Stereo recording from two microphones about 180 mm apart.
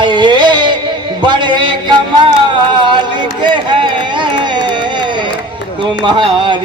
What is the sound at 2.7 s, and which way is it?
Run, 25° right (ahead or behind).